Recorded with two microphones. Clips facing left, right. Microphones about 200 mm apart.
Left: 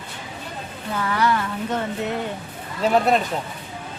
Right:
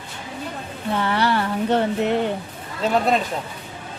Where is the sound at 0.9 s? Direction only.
30° right (ahead or behind).